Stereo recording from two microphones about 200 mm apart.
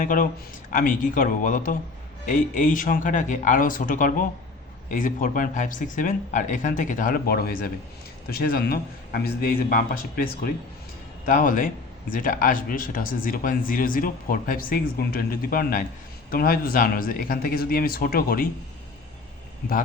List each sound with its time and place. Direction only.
0.0 s speech: 45° left (ahead or behind)